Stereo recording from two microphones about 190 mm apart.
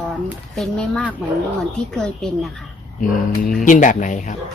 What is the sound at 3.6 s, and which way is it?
Speech, 40° left (ahead or behind).